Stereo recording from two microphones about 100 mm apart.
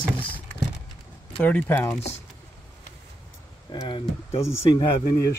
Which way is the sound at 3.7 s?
50° left (ahead or behind).